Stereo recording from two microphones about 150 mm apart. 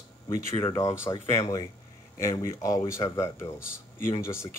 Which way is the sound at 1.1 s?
25° left (ahead or behind).